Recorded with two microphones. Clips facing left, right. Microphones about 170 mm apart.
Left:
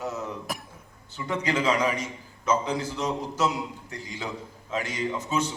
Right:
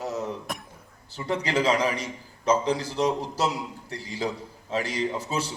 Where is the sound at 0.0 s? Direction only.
35° right (ahead or behind).